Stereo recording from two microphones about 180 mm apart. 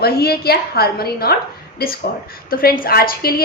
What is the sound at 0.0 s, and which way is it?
A woman's voice, 60° left (ahead or behind).